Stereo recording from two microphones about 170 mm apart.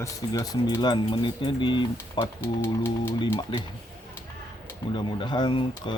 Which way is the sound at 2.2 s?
15° left (ahead or behind).